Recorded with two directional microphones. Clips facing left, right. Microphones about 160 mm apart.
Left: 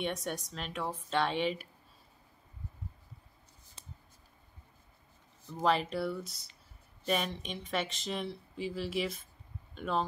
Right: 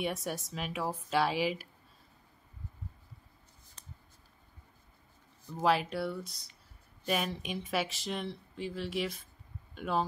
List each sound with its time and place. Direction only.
0.0 s speech: 5° right (ahead or behind)
5.6 s speech: 5° right (ahead or behind)